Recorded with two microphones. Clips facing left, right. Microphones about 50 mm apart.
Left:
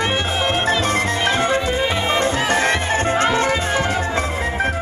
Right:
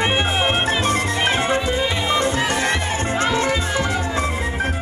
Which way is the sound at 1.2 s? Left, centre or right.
Right.